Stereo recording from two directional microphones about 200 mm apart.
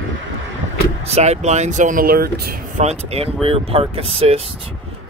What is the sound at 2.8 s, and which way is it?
Speech, 30° right (ahead or behind).